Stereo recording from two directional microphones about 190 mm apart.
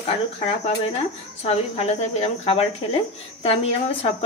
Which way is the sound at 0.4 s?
30° left (ahead or behind).